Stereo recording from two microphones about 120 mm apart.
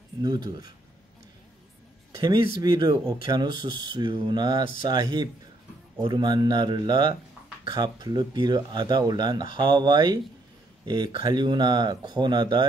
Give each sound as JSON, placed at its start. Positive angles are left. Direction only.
{"t": 0.2, "sound": "speech", "side_deg": -35}
{"t": 2.1, "sound": "speech", "side_deg": -35}